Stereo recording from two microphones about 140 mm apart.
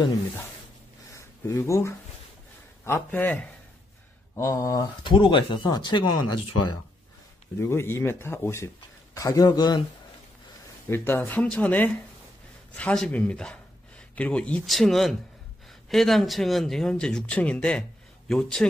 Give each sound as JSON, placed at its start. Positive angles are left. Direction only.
{"t": 1.1, "sound": "a sound", "side_deg": 20}
{"t": 2.8, "sound": "speech", "side_deg": 15}
{"t": 7.5, "sound": "a man's voice", "side_deg": 20}
{"t": 10.9, "sound": "speech", "side_deg": 15}